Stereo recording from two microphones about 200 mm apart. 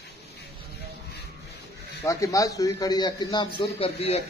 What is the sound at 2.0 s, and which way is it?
A man's voice, 15° left (ahead or behind).